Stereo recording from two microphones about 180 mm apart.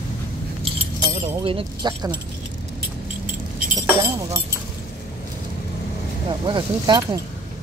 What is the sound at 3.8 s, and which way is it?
Speech, 15° right (ahead or behind).